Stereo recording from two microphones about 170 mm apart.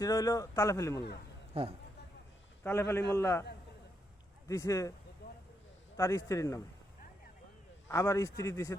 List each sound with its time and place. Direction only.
0.0 s a man's voice: 20° left (ahead or behind)
1.5 s speech: 35° right (ahead or behind)
2.6 s a man's voice: 10° left (ahead or behind)
4.4 s a man's voice: 20° left (ahead or behind)
5.2 s a sound: 80° left
6.0 s a man's voice: 20° left (ahead or behind)
7.9 s a man's voice: 15° left (ahead or behind)